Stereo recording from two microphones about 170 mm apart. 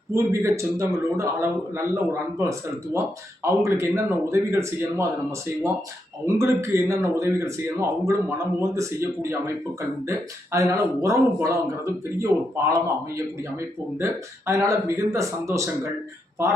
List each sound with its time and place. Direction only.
0.1 s speech: 15° right (ahead or behind)
6.2 s speech: 15° right (ahead or behind)